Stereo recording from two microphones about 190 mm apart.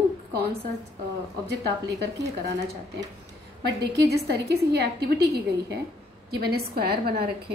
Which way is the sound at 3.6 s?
60° right (ahead or behind).